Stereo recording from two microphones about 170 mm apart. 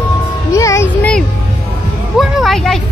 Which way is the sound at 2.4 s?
Centre (ahead or behind).